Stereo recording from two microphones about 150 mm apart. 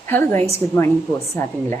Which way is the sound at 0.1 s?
15° left (ahead or behind).